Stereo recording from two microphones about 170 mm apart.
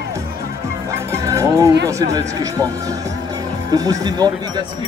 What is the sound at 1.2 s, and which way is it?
Speech, 20° right (ahead or behind).